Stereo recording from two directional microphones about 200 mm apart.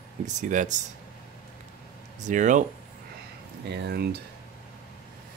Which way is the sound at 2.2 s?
40° right (ahead or behind).